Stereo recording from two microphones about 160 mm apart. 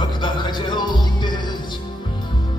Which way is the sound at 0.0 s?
30° left (ahead or behind).